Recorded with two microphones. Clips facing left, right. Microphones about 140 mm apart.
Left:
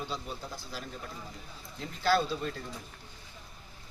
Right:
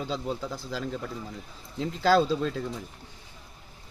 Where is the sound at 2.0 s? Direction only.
90° right.